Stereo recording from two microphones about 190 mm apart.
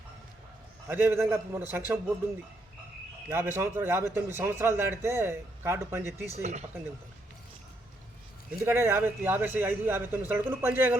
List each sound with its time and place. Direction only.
0.9 s a man's voice: 10° right (ahead or behind)
3.2 s a man's voice: 10° right (ahead or behind)
6.3 s speech: 35° right (ahead or behind)
8.5 s a man's voice: 10° right (ahead or behind)